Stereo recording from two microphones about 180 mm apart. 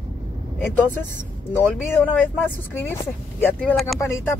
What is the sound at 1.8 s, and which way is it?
Speech, 10° left (ahead or behind).